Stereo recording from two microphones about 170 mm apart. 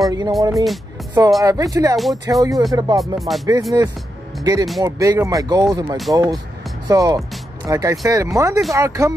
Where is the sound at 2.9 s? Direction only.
Centre (ahead or behind).